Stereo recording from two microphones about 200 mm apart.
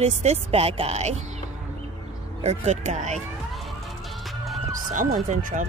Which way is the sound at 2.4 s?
35° right (ahead or behind).